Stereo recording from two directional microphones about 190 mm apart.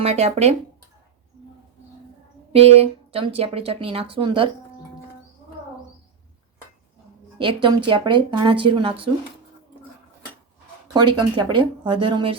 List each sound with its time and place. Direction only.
0.0 s speech: 35° right (ahead or behind)
2.5 s speech: 30° right (ahead or behind)
7.3 s speech: 25° right (ahead or behind)
10.9 s speech: 25° right (ahead or behind)